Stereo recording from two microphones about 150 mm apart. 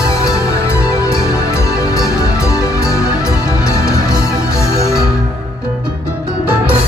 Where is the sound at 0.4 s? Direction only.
20° left (ahead or behind).